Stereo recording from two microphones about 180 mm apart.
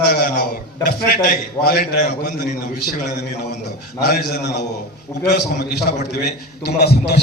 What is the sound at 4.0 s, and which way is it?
A man's voice, 65° left (ahead or behind).